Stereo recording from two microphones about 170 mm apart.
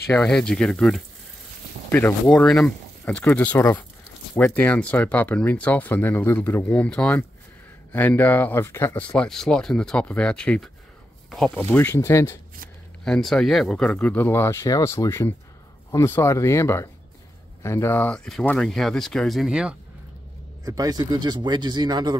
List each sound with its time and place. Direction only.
0.1 s speech: 5° left (ahead or behind)
13.0 s speech: centre (ahead or behind)
20.6 s speech: 20° right (ahead or behind)